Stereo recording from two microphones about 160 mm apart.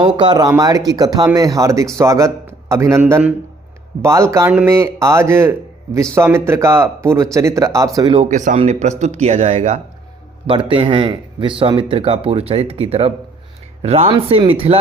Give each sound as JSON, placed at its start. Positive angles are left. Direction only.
{"t": 0.2, "sound": "a man's voice", "side_deg": -25}
{"t": 8.1, "sound": "speech", "side_deg": -45}